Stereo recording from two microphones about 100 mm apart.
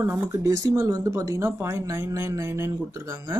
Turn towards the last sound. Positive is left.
turn(degrees=-30)  # may be behind; listen again after turning